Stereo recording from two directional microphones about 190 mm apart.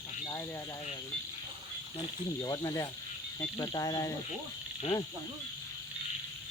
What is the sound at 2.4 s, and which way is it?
Speech, 20° left (ahead or behind).